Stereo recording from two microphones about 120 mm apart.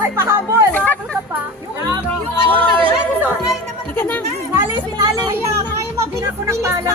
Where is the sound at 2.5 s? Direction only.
15° left (ahead or behind).